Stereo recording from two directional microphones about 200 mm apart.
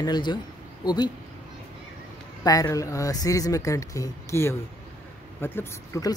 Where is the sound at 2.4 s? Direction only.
20° left (ahead or behind).